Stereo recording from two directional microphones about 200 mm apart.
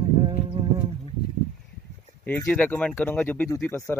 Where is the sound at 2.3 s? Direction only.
10° left (ahead or behind).